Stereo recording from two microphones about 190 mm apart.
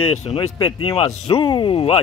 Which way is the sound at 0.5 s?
25° left (ahead or behind).